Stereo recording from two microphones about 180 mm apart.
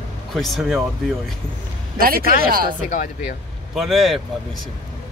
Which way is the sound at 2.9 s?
45° left (ahead or behind).